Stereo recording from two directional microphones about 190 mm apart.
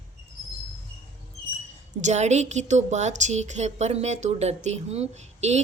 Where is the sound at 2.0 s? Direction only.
35° right (ahead or behind).